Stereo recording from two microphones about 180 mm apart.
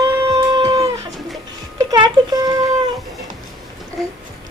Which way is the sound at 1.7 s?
25° right (ahead or behind).